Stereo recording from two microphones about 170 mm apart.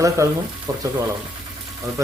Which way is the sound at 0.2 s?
15° right (ahead or behind).